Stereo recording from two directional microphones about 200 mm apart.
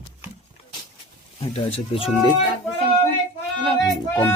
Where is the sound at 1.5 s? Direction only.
30° left (ahead or behind).